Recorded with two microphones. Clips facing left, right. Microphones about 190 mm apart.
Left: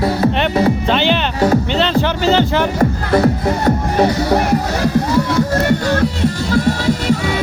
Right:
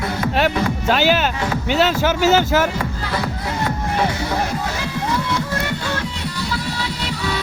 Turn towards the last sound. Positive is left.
turn(degrees=45)  # may be behind; listen again after turning